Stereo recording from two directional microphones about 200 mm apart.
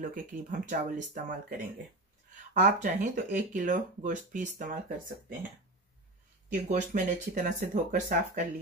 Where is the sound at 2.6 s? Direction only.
40° right (ahead or behind).